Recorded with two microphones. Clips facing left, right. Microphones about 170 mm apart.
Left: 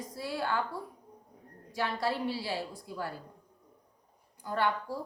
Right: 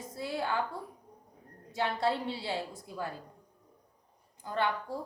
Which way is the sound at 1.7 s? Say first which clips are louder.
Right 1 dB; 20° right (ahead or behind).